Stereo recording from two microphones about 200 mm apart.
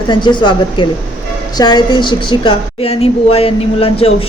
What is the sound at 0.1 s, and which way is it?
A woman's voice, 25° left (ahead or behind).